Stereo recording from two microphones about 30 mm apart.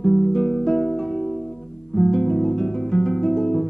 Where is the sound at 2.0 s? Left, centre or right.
Centre.